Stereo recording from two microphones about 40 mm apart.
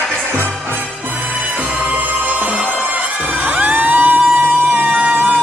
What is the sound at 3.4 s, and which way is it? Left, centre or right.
Emergency vehicle, right.